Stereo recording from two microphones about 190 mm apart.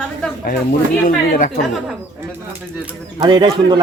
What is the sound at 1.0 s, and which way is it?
Speech, 45° left (ahead or behind).